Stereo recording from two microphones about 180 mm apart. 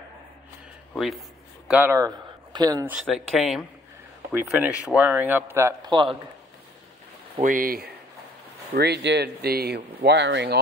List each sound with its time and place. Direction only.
0.9 s speech: centre (ahead or behind)
1.7 s speech: 10° right (ahead or behind)
2.9 s speech: centre (ahead or behind); by 6.1 s 25° right (ahead or behind)
7.4 s speech: 50° right (ahead or behind)
8.7 s speech: 65° right (ahead or behind)